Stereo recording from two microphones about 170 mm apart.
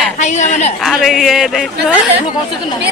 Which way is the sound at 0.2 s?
45° left (ahead or behind).